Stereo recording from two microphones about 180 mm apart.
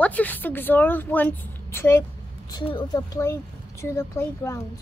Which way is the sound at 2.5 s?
25° left (ahead or behind).